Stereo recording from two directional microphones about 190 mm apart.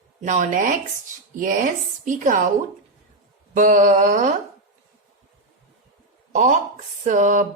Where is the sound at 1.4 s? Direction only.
40° right (ahead or behind).